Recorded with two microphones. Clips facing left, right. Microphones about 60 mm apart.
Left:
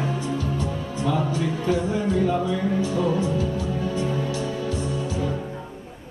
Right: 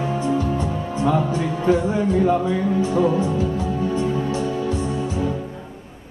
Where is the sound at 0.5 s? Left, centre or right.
Right.